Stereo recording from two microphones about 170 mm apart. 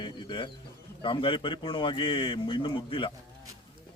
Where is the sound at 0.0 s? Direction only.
30° left (ahead or behind).